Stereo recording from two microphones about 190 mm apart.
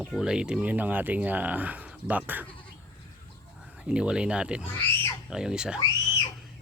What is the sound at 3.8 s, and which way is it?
Speech, 5° right (ahead or behind).